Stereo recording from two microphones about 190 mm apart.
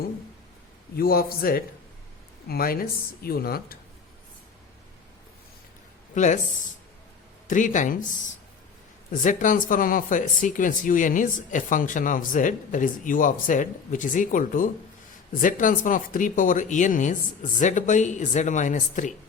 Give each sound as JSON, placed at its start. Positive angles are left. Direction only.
{"t": 0.9, "sound": "speech", "side_deg": 50}
{"t": 6.1, "sound": "a woman's voice", "side_deg": 40}
{"t": 7.4, "sound": "a woman's voice", "side_deg": 40}
{"t": 9.2, "sound": "a woman's voice", "side_deg": 45}